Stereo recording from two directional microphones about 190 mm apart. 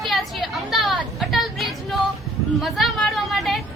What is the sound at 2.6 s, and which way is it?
Chatter, centre (ahead or behind).